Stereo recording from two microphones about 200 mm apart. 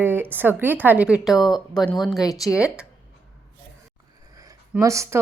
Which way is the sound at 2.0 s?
20° left (ahead or behind).